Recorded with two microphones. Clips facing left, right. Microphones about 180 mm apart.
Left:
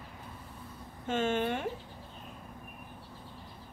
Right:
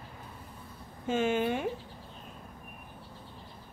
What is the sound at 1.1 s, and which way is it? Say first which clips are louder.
Speech: right 2 dB; 10° right (ahead or behind).